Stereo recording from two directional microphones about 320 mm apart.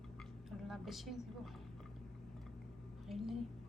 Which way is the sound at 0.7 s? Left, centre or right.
Centre.